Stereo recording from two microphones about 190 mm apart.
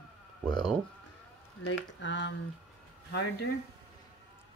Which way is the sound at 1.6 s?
75° left (ahead or behind).